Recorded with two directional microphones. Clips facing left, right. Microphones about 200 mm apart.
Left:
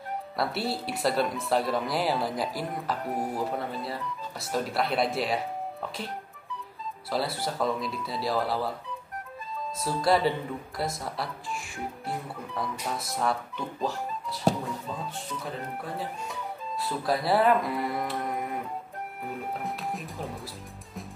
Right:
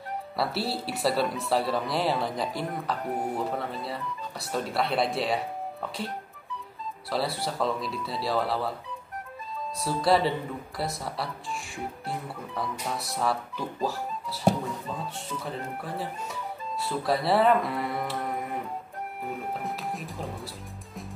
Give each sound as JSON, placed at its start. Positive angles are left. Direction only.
{"t": 0.4, "sound": "speech", "side_deg": 0}
{"t": 9.8, "sound": "speech", "side_deg": 0}
{"t": 15.4, "sound": "speech", "side_deg": 0}
{"t": 19.6, "sound": "speech", "side_deg": 0}